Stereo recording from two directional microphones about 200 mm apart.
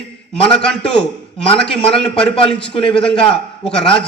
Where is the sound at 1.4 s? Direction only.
25° left (ahead or behind).